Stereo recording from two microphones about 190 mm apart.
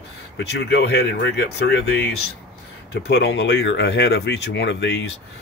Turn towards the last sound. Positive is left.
turn(degrees=65)  # may be behind; listen again after turning